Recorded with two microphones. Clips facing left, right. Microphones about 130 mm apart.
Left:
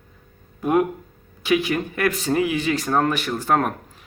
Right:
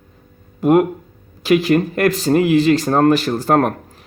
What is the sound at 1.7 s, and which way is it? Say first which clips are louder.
Speech: right 7 dB; 45° right (ahead or behind).